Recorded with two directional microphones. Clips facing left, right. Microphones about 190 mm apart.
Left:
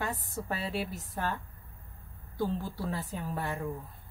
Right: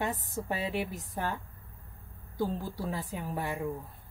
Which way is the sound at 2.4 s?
15° right (ahead or behind).